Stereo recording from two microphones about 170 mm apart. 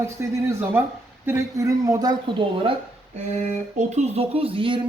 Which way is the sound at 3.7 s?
40° right (ahead or behind).